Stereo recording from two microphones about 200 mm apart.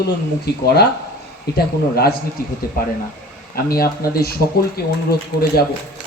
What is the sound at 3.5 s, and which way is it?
Speech, 50° left (ahead or behind).